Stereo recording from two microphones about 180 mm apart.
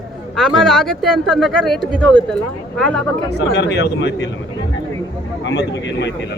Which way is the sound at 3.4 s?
70° left (ahead or behind).